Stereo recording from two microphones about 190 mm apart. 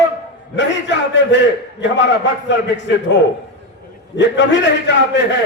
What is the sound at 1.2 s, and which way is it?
A man's voice, 70° left (ahead or behind).